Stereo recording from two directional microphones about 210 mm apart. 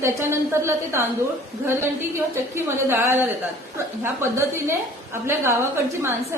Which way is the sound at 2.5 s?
10° right (ahead or behind).